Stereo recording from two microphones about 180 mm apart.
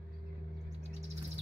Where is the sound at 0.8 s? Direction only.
35° right (ahead or behind).